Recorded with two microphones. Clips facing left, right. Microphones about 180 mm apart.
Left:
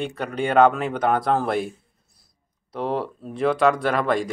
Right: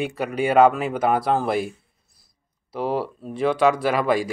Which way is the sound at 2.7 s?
5° right (ahead or behind).